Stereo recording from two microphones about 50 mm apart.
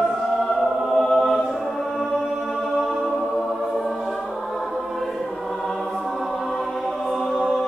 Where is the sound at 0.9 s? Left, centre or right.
Centre.